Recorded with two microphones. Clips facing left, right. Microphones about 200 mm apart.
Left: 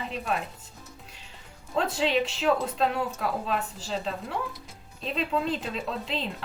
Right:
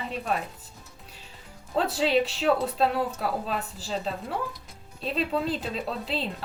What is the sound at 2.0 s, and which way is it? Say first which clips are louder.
Speech: right 3 dB; 35° right (ahead or behind).